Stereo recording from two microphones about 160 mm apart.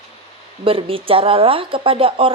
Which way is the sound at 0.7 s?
35° right (ahead or behind).